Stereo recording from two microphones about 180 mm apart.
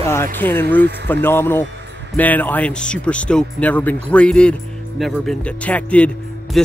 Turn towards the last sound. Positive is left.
turn(degrees=0)  # may be behind; listen again after turning